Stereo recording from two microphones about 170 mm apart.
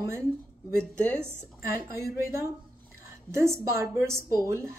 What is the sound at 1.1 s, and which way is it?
Speech, 15° right (ahead or behind).